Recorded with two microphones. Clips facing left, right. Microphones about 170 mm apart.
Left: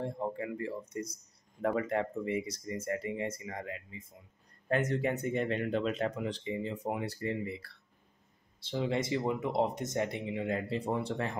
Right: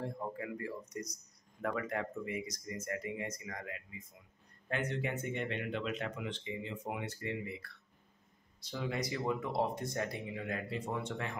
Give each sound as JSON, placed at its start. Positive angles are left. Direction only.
{"t": 0.0, "sound": "speech", "side_deg": 25}
{"t": 4.6, "sound": "speech", "side_deg": 40}